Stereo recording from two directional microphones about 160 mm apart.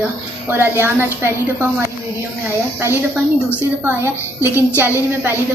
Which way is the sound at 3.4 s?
15° right (ahead or behind).